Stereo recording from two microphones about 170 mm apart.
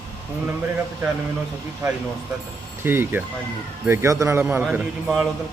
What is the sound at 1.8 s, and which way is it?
Speech, 20° right (ahead or behind).